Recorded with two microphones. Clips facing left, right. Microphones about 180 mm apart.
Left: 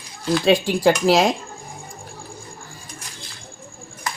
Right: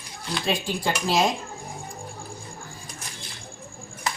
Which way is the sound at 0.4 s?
90° left.